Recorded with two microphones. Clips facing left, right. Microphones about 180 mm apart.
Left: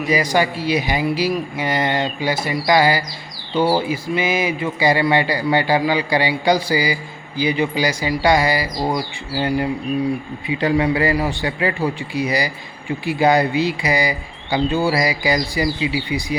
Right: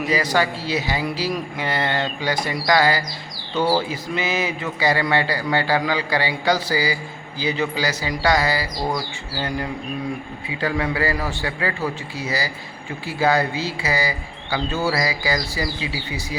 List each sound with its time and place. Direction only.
0.1 s speech: 10° left (ahead or behind)